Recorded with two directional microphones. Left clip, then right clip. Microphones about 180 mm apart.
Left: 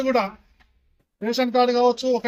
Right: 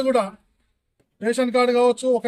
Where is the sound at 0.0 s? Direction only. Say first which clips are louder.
Right 1 dB; 20° right (ahead or behind).